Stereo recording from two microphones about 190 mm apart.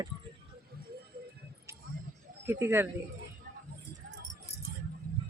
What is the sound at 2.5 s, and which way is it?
Speech, 10° right (ahead or behind).